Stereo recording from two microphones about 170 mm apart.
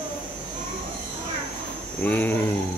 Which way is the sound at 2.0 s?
10° left (ahead or behind).